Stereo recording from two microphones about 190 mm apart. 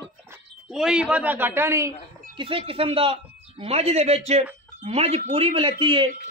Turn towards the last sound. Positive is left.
turn(degrees=-25)  # may be behind; listen again after turning